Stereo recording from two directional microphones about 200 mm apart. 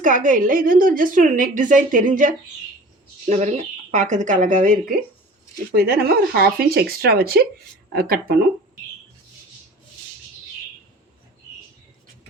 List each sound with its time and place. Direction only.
0.0 s a woman's voice: 40° right (ahead or behind)